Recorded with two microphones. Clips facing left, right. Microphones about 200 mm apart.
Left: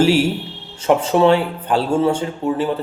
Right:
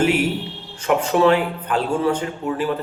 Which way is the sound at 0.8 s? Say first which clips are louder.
Left 3 dB; 30° left (ahead or behind).